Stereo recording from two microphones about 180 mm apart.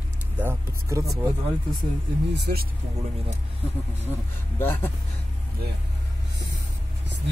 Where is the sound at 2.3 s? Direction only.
60° right (ahead or behind).